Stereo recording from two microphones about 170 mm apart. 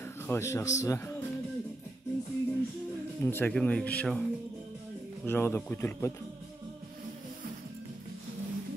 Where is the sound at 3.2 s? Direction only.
10° left (ahead or behind).